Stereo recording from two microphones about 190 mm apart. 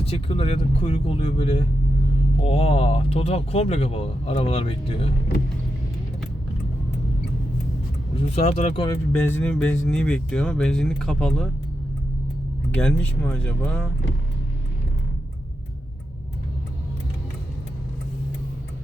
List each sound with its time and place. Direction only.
0.0 s speech: 30° left (ahead or behind)
8.1 s speech: 35° left (ahead or behind)
9.1 s speech: 10° left (ahead or behind)
12.7 s speech: 5° left (ahead or behind)